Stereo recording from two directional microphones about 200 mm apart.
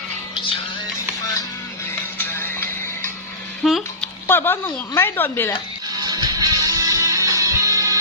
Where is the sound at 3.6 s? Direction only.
Centre (ahead or behind).